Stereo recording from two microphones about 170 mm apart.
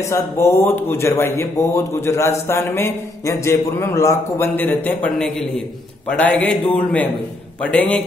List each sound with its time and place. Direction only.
0.0 s speech: 15° left (ahead or behind)